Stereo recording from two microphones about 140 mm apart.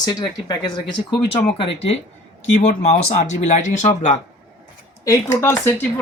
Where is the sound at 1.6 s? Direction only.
45° left (ahead or behind).